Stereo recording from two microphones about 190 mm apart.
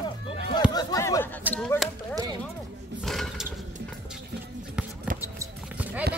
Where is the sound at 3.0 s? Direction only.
Centre (ahead or behind).